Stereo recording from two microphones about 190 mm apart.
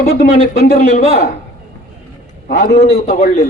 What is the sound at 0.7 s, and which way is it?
Speech, 35° left (ahead or behind).